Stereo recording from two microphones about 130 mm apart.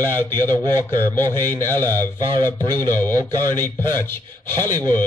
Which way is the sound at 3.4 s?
15° left (ahead or behind).